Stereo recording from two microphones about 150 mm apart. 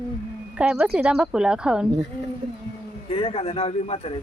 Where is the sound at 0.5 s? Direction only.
5° right (ahead or behind).